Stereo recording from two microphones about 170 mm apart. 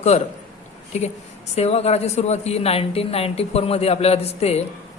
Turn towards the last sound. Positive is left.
turn(degrees=40)  # may be behind; listen again after turning